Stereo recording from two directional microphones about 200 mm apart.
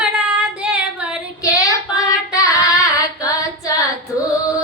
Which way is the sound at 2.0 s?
15° left (ahead or behind).